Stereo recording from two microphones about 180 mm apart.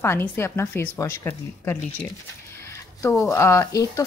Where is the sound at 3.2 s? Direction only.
15° left (ahead or behind).